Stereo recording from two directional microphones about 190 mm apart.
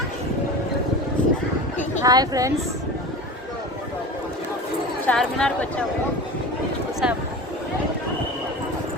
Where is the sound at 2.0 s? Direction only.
20° right (ahead or behind).